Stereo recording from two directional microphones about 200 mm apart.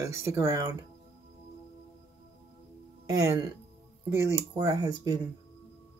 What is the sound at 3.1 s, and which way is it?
Speech, 15° right (ahead or behind).